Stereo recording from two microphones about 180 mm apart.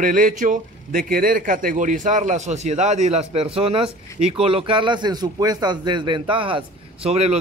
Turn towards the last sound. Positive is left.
turn(degrees=-35)  # may be behind; listen again after turning